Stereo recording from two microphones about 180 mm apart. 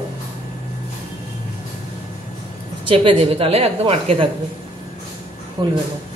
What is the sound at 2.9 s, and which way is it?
A woman's voice, 30° right (ahead or behind).